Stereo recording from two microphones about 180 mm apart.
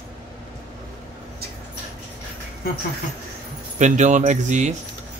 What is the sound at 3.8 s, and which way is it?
Speech, 40° right (ahead or behind).